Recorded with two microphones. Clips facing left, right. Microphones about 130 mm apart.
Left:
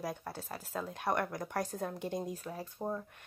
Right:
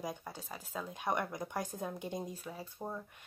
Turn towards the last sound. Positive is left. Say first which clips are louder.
# left 4 dB
turn(degrees=10)  # may be behind; listen again after turning